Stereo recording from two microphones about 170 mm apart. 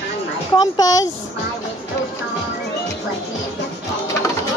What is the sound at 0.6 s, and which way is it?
Speech, 20° left (ahead or behind).